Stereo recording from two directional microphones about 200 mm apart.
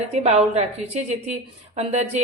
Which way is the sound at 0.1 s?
30° right (ahead or behind).